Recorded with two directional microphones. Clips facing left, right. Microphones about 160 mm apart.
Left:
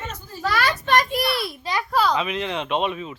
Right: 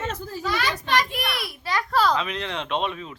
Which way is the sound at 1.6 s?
15° left (ahead or behind).